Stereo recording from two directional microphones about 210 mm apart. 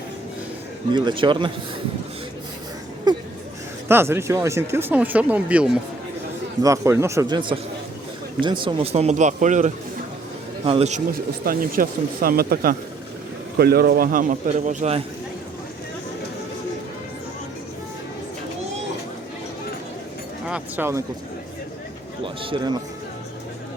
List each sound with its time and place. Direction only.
0.9 s a man's voice: 25° right (ahead or behind)
3.8 s a man's voice: 10° right (ahead or behind); by 15.0 s 30° right (ahead or behind)
20.5 s speech: 10° right (ahead or behind)
22.2 s a man's voice: 25° right (ahead or behind)